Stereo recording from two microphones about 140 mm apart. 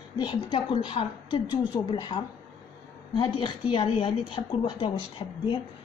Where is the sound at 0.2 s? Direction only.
35° left (ahead or behind).